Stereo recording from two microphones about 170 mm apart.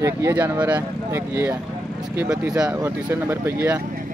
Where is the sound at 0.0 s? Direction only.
15° right (ahead or behind).